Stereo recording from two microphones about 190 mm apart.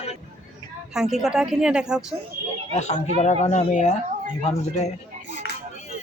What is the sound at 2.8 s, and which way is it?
Speech, 35° left (ahead or behind).